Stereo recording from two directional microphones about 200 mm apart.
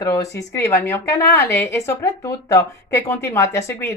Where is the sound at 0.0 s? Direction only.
15° left (ahead or behind).